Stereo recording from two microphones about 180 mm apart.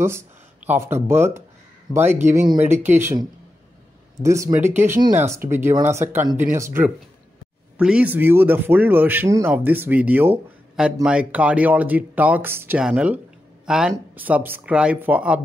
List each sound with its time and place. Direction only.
0.0 s speech: 15° right (ahead or behind)